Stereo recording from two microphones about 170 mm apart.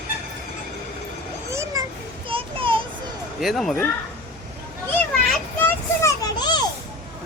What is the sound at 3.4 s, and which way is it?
Speech, centre (ahead or behind).